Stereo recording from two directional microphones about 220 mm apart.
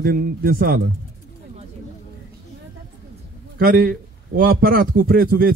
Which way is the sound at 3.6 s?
40° right (ahead or behind).